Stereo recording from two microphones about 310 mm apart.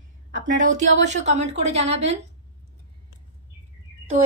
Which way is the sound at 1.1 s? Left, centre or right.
Right.